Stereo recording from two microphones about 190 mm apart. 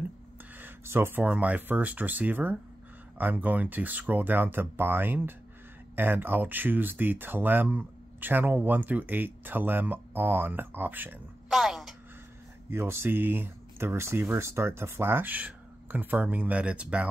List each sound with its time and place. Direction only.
0.6 s speech: 10° right (ahead or behind)
12.6 s speech: 15° right (ahead or behind)